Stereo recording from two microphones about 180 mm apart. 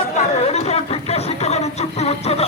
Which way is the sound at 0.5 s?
35° left (ahead or behind).